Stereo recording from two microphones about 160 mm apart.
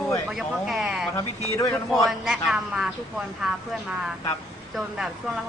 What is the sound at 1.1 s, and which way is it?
Speech, 20° left (ahead or behind).